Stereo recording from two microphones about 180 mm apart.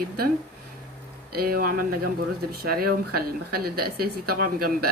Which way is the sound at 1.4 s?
55° right (ahead or behind).